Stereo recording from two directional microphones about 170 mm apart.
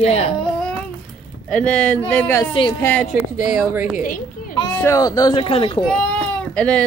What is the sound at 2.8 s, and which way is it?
Speech, 10° left (ahead or behind).